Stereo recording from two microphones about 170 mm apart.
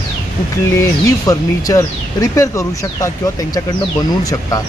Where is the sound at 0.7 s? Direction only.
20° left (ahead or behind).